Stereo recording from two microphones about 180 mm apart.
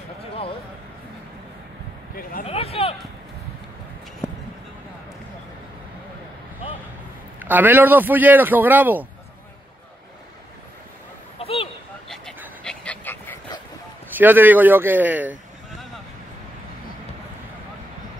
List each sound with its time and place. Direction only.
2.4 s speech: 35° left (ahead or behind)
4.2 s a sound: 15° left (ahead or behind)
7.3 s a man's voice: 10° right (ahead or behind)
11.3 s a sound: 30° left (ahead or behind)
12.6 s dog: 5° left (ahead or behind)
14.1 s a man's voice: 10° right (ahead or behind)